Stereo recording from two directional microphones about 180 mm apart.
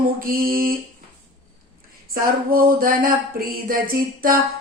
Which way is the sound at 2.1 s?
55° right (ahead or behind).